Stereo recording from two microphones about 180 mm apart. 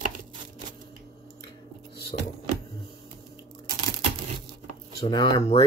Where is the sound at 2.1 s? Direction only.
45° left (ahead or behind).